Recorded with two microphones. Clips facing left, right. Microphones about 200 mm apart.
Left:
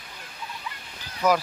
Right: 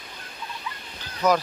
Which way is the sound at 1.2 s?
10° left (ahead or behind).